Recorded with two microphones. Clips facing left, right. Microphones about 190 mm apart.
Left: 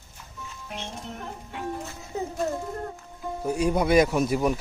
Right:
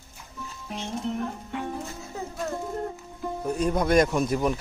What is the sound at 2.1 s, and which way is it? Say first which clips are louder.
Music: left 5 dB; 20° left (ahead or behind).